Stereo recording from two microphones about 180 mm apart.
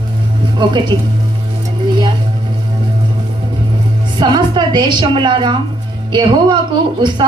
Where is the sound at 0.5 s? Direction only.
25° right (ahead or behind).